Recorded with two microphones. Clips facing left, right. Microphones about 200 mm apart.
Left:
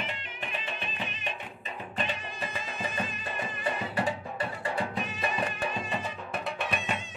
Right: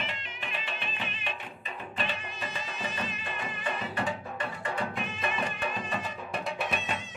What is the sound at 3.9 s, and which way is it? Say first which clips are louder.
Music: left 2 dB; 35° left (ahead or behind).